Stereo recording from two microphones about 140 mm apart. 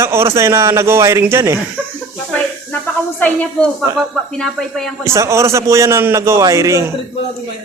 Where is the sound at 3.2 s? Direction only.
10° left (ahead or behind).